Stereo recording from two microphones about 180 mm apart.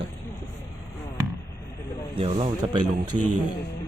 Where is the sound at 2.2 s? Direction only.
30° right (ahead or behind).